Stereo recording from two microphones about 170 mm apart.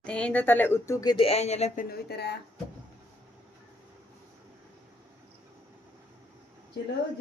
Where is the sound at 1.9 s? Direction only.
75° left (ahead or behind).